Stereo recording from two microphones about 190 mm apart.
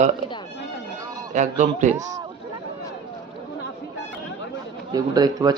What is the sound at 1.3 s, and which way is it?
Speech, 40° right (ahead or behind).